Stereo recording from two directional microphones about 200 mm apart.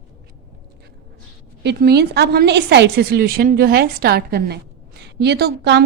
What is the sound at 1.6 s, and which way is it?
A woman's voice, 55° right (ahead or behind).